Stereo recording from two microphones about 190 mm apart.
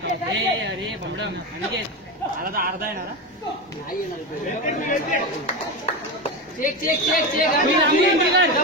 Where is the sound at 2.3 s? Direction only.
50° right (ahead or behind).